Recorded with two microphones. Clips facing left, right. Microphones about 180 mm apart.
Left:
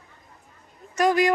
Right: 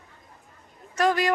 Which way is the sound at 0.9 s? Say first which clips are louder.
Left 3 dB; 15° left (ahead or behind).